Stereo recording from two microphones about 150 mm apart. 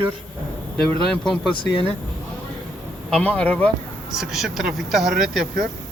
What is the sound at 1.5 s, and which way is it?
Speech, 35° left (ahead or behind).